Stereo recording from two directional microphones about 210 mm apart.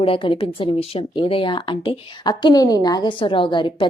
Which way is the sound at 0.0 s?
25° left (ahead or behind).